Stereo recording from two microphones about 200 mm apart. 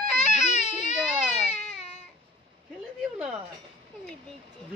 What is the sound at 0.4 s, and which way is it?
Baby cry, 35° left (ahead or behind).